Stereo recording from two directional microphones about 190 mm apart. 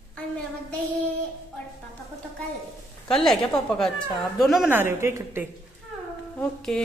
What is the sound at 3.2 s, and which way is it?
A woman's voice, 5° left (ahead or behind).